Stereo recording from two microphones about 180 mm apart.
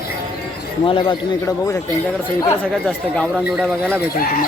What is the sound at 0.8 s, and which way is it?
Speech, 30° left (ahead or behind).